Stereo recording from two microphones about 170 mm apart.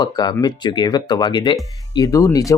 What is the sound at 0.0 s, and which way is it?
Speech, 25° left (ahead or behind).